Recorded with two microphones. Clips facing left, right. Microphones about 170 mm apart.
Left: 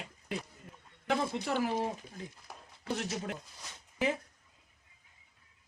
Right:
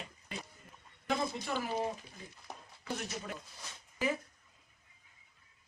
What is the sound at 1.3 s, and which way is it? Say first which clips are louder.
Speech: left 5 dB; 70° left (ahead or behind).